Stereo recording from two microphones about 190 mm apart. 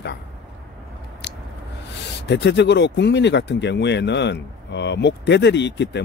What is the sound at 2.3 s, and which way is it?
Speech, 65° left (ahead or behind).